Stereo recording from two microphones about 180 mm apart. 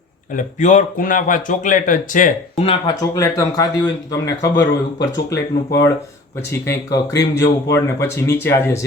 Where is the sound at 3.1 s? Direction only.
20° left (ahead or behind).